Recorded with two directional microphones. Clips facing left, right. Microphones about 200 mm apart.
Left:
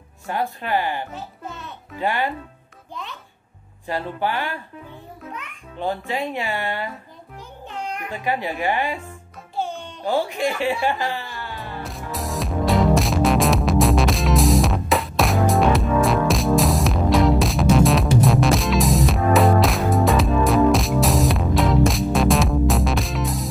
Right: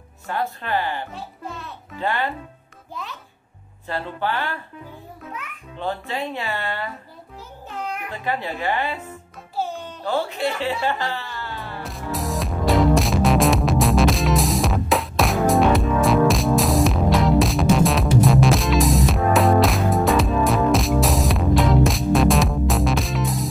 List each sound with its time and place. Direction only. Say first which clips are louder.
0.3 s speech: left 1 dB; 15° left (ahead or behind)
1.1 s music: even; centre (ahead or behind)
2.0 s speech: left 1 dB; 15° left (ahead or behind)
2.9 s music: even; centre (ahead or behind)
3.8 s speech: left 2 dB; 15° left (ahead or behind)
5.8 s speech: left 2 dB; 15° left (ahead or behind)
7.8 s cat: even; 5° right (ahead or behind)
8.1 s speech: left 3 dB; 15° left (ahead or behind)
9.6 s music: even; 5° right (ahead or behind)
10.0 s speech: left 2 dB; 15° left (ahead or behind)
11.8 s music: right 3 dB; centre (ahead or behind)